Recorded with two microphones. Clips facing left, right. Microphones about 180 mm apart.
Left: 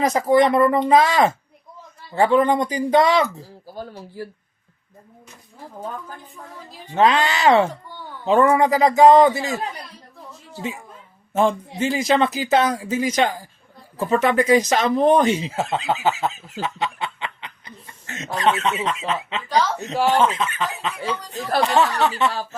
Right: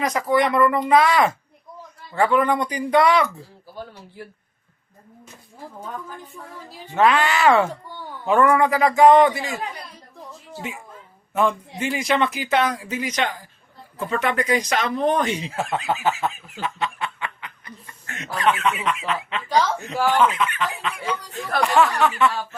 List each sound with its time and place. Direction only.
0.0 s speech: 25° left (ahead or behind)
3.8 s speech: 40° left (ahead or behind)
6.9 s speech: 20° left (ahead or behind)
11.3 s speech: 30° left (ahead or behind)
14.1 s speech: 25° left (ahead or behind)
16.6 s speech: 35° left (ahead or behind)
17.0 s speech: 25° left (ahead or behind)